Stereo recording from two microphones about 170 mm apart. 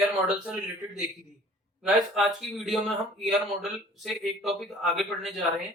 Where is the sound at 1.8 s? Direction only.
Centre (ahead or behind).